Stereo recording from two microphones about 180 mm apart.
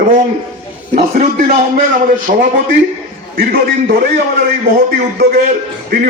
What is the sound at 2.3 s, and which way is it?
A man's voice, 50° right (ahead or behind).